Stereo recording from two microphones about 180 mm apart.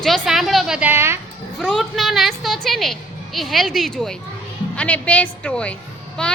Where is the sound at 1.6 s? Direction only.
5° left (ahead or behind).